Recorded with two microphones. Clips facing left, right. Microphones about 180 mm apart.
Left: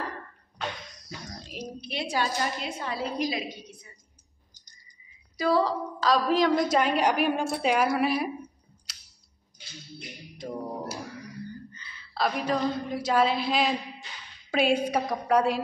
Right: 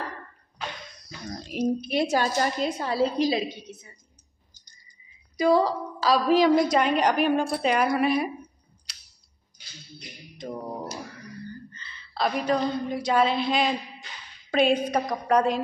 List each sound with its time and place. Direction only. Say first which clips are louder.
1.5 s a woman's voice: right 12 dB; 50° right (ahead or behind); by 3.9 s 25° right (ahead or behind)
5.4 s a woman's voice: right 3 dB; 15° right (ahead or behind); by 8.3 s 5° left (ahead or behind)
8.9 s a sound: right 1 dB; centre (ahead or behind)
10.3 s music: right 1 dB; 10° left (ahead or behind)
11.7 s a sound: right 1 dB; 10° left (ahead or behind)
14.5 s a woman's voice: right 2 dB; 5° left (ahead or behind)